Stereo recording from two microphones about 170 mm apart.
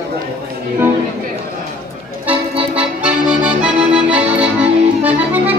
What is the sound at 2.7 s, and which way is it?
Accordion, 5° right (ahead or behind).